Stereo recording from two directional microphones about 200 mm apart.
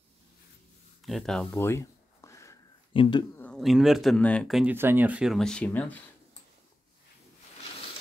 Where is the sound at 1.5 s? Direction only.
15° left (ahead or behind).